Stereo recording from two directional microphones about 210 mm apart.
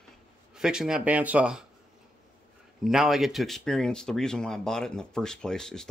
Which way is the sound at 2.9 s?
Centre (ahead or behind).